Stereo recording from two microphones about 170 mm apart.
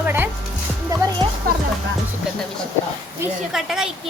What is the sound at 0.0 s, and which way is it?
Music, 10° right (ahead or behind).